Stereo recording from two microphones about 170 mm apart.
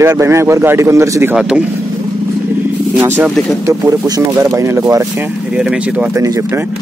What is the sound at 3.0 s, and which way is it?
Speech, 15° right (ahead or behind).